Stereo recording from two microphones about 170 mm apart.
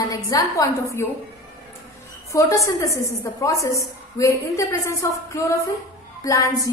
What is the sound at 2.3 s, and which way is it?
A woman's voice, 20° left (ahead or behind).